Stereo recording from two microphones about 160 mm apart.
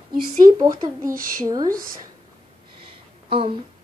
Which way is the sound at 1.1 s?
60° right (ahead or behind).